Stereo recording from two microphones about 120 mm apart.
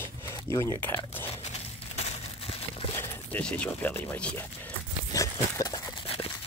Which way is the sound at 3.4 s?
10° left (ahead or behind).